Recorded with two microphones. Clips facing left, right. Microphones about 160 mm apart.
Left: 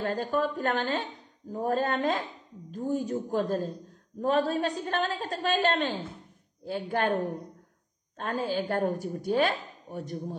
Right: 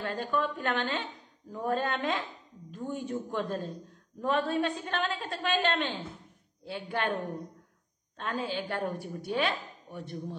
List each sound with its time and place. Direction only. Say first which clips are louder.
0.0 s a woman's voice: left 3 dB; 40° left (ahead or behind)
8.2 s speech: left 4 dB; 45° left (ahead or behind)